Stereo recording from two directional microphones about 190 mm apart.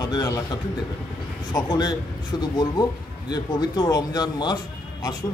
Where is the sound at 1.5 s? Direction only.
20° left (ahead or behind).